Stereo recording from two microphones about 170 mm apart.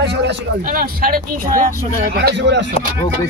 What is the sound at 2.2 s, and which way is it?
Speech, 90° right.